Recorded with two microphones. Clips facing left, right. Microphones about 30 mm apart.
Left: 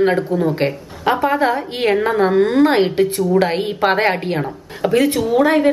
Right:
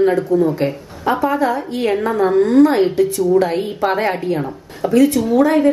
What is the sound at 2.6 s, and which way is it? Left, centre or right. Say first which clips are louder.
A woman's voice: right 1 dB; left.